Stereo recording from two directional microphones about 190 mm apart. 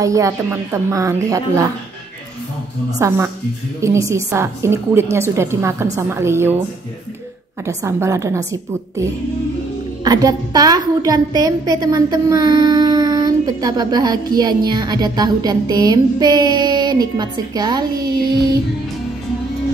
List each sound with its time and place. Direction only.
0.0 s a woman's voice: 15° right (ahead or behind)
3.0 s a woman's voice: 15° right (ahead or behind)
7.6 s a woman's voice: 15° right (ahead or behind)
10.0 s a woman's voice: 20° right (ahead or behind)